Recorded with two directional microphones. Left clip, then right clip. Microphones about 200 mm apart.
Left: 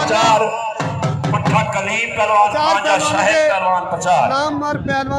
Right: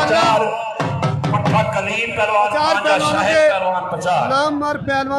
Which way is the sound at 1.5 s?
25° left (ahead or behind).